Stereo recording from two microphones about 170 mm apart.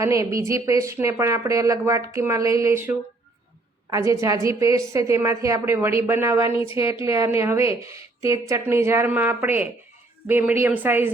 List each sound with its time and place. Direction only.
0.0 s a woman's voice: 20° right (ahead or behind)
3.9 s a woman's voice: 20° right (ahead or behind)